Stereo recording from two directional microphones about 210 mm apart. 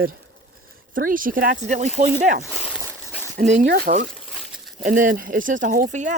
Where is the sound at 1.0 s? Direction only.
40° right (ahead or behind).